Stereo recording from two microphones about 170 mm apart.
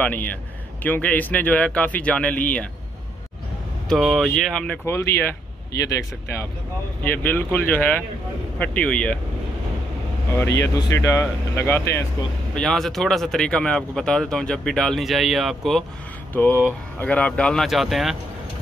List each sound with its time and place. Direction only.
0.0 s speech: 10° left (ahead or behind)
3.9 s speech: centre (ahead or behind)
4.8 s speech: 15° left (ahead or behind)
7.0 s speech: 10° left (ahead or behind)
10.6 s speech: 20° left (ahead or behind)
12.5 s speech: 5° left (ahead or behind)
16.3 s speech: 10° left (ahead or behind)